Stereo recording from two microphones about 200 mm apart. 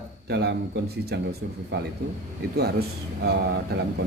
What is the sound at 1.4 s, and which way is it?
Speech, 65° right (ahead or behind).